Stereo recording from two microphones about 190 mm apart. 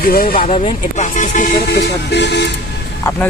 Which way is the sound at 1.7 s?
60° left (ahead or behind).